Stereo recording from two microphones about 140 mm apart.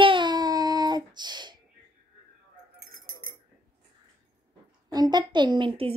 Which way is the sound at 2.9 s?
90° right.